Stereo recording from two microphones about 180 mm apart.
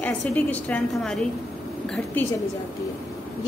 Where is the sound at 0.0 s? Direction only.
10° left (ahead or behind).